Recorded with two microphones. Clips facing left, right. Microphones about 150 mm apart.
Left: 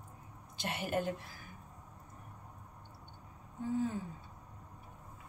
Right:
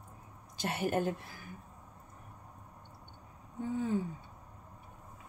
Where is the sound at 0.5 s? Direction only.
45° right (ahead or behind).